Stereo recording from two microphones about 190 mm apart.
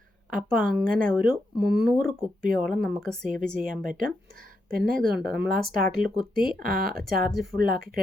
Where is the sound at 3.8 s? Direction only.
45° right (ahead or behind).